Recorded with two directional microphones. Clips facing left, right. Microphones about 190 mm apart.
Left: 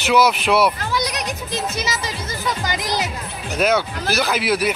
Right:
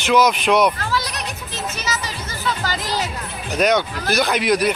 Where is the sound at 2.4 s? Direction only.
15° left (ahead or behind).